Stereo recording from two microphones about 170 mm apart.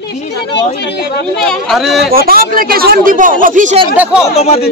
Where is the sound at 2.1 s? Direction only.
60° right (ahead or behind).